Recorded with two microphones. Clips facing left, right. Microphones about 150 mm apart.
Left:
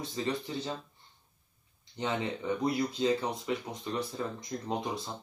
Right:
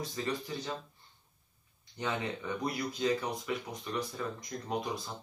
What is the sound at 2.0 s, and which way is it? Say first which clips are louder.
Speech: left 2 dB; 25° left (ahead or behind).